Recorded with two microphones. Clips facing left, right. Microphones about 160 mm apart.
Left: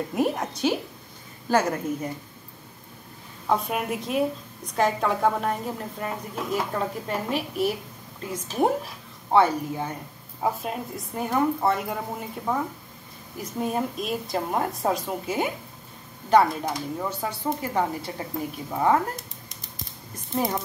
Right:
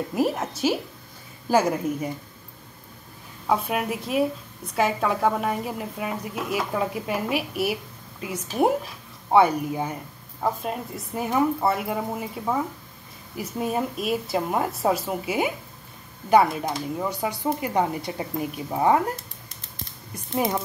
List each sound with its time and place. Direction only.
0.1 s a woman's voice: centre (ahead or behind)
3.4 s a woman's voice: 5° right (ahead or behind)
10.4 s a woman's voice: centre (ahead or behind); by 19.2 s 15° right (ahead or behind)
20.3 s a woman's voice: 5° right (ahead or behind)